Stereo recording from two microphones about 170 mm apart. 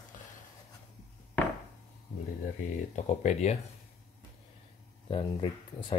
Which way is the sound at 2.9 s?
40° left (ahead or behind).